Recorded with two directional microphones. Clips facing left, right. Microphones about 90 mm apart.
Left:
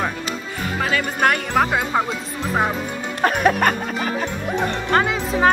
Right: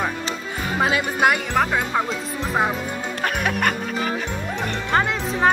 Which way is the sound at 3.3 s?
40° left (ahead or behind).